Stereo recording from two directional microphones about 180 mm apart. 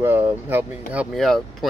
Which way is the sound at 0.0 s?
10° right (ahead or behind).